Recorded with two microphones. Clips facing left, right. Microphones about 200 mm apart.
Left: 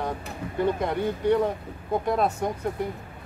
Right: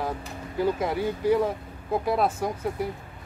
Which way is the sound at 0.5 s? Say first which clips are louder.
Even; 5° right (ahead or behind).